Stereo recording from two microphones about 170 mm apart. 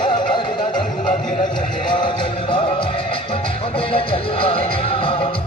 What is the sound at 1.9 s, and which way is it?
Music, 30° left (ahead or behind).